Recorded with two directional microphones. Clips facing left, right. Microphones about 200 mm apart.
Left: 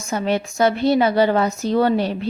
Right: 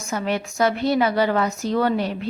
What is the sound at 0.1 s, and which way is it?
A woman's voice, 25° left (ahead or behind).